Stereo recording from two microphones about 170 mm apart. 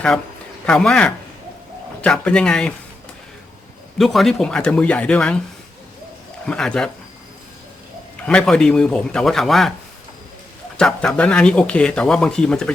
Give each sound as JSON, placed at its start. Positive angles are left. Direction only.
{"t": 0.6, "sound": "speech", "side_deg": 5}
{"t": 3.9, "sound": "speech", "side_deg": 0}
{"t": 6.4, "sound": "speech", "side_deg": 5}
{"t": 8.3, "sound": "speech", "side_deg": 5}
{"t": 10.8, "sound": "speech", "side_deg": 5}